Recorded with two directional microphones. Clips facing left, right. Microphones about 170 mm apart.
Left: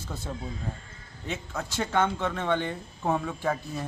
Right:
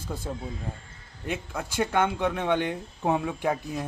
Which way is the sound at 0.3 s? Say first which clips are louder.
Right 1 dB; 10° right (ahead or behind).